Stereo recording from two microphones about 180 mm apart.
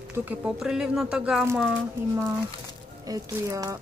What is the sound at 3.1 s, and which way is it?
Speech, 20° right (ahead or behind).